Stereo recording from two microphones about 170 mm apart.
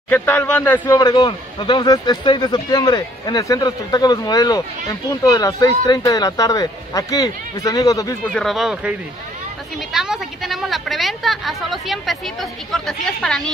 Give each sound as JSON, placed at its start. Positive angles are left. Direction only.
{"t": 0.1, "sound": "speech", "side_deg": 10}
{"t": 8.3, "sound": "a woman's voice", "side_deg": 0}
{"t": 9.9, "sound": "a woman's voice", "side_deg": -5}